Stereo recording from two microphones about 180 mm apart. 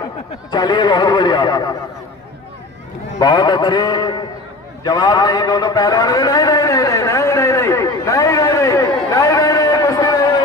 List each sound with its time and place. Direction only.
0.5 s speech: 20° left (ahead or behind)
3.2 s speech: 20° left (ahead or behind)
4.8 s a sound: 20° left (ahead or behind)